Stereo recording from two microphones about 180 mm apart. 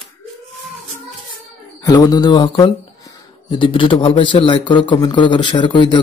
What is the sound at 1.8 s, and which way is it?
Speech, 20° left (ahead or behind).